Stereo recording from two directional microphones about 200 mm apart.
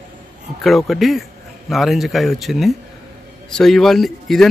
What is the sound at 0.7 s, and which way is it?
A man's voice, centre (ahead or behind).